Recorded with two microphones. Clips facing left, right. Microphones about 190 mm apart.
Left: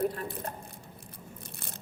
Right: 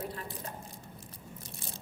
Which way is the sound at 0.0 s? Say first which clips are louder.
Left 8 dB; 60° left (ahead or behind).